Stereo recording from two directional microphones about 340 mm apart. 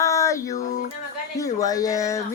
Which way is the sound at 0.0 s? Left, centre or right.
Centre.